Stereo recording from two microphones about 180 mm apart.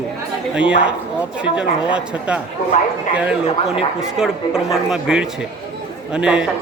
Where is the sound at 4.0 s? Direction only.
Centre (ahead or behind).